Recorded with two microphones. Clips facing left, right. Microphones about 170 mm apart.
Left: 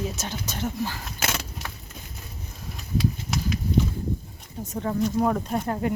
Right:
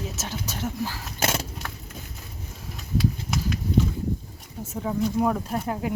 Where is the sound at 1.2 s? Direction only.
35° right (ahead or behind).